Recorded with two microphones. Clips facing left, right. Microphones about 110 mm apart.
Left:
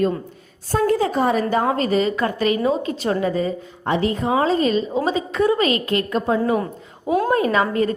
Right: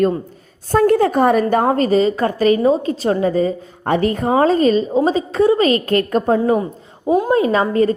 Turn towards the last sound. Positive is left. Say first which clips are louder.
# right 4 dB
turn(degrees=-35)  # may be behind; listen again after turning